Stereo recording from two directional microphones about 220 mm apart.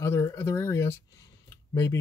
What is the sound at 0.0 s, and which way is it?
Speech, 10° left (ahead or behind).